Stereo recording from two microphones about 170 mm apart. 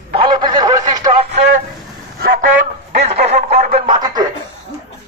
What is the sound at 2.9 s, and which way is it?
Music, 40° right (ahead or behind).